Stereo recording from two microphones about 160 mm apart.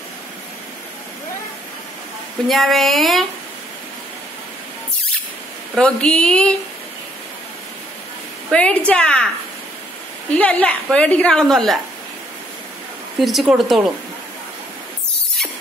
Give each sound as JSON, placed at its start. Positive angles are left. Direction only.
{"t": 2.4, "sound": "a woman's voice", "side_deg": 0}
{"t": 5.8, "sound": "a woman's voice", "side_deg": 5}
{"t": 8.5, "sound": "a woman's voice", "side_deg": 5}
{"t": 10.3, "sound": "a woman's voice", "side_deg": 10}
{"t": 13.2, "sound": "a woman's voice", "side_deg": 0}